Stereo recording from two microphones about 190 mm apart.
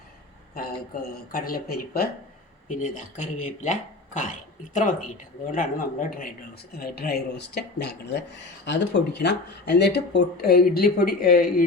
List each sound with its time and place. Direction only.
1.3 s speech: 50° left (ahead or behind)
2.6 s speech: 40° left (ahead or behind)